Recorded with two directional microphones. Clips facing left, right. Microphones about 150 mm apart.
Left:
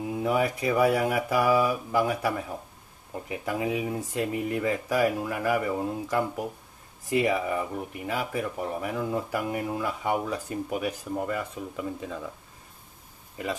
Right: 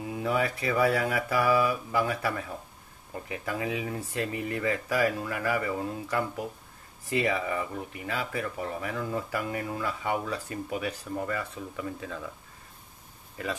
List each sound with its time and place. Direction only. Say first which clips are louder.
0.1 s speech: left 2 dB; 15° left (ahead or behind)